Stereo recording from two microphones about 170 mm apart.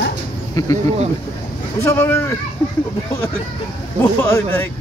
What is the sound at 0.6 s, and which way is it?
Speech, 20° left (ahead or behind).